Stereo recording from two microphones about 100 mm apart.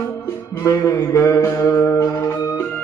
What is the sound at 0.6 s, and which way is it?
Music, 35° left (ahead or behind).